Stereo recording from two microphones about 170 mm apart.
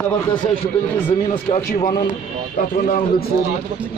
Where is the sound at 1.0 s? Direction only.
30° left (ahead or behind).